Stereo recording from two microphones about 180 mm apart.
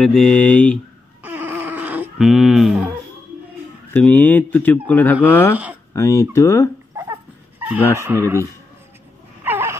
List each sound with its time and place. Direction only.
0.0 s speech: 5° left (ahead or behind)
1.2 s a sound: 10° right (ahead or behind)
3.9 s speech: 10° left (ahead or behind)
7.0 s a sound: 10° right (ahead or behind)
8.0 s speech: 15° right (ahead or behind)
9.4 s wail: 10° right (ahead or behind)